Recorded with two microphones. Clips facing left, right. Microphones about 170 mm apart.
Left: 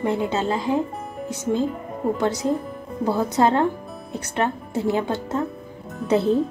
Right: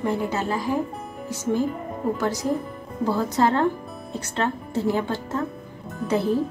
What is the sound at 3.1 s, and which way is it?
A woman's voice, 20° left (ahead or behind).